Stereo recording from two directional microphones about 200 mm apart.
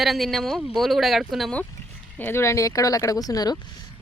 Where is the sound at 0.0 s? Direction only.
Centre (ahead or behind); by 3.6 s 20° left (ahead or behind).